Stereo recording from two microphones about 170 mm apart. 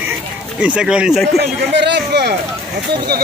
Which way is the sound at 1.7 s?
90° right.